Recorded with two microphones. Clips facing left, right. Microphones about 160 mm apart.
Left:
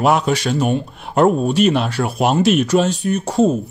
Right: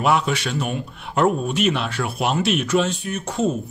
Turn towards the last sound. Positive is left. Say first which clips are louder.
# left 7 dB
turn(degrees=40)  # may be behind; listen again after turning